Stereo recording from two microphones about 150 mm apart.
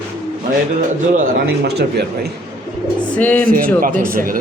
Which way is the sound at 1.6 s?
90° right.